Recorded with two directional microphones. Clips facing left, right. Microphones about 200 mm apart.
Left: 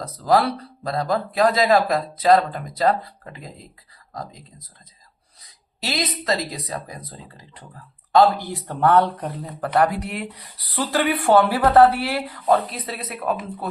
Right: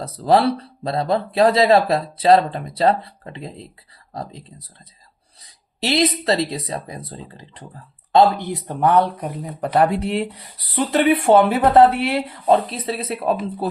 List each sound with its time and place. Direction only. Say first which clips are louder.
0.0 s speech: right 3 dB; 25° right (ahead or behind)
5.8 s speech: right 7 dB; 30° right (ahead or behind); by 9.6 s 10° right (ahead or behind)
9.7 s speech: right 3 dB; 25° right (ahead or behind)